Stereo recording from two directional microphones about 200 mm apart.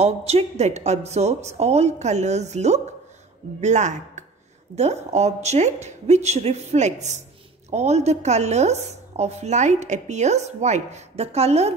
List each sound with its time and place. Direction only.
0.0 s a woman's voice: 30° right (ahead or behind)